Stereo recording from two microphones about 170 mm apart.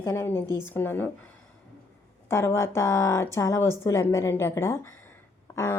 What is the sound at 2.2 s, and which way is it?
A woman's voice, 15° left (ahead or behind).